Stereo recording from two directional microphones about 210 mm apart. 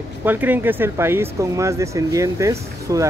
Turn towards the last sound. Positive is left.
turn(degrees=-15)  # may be behind; listen again after turning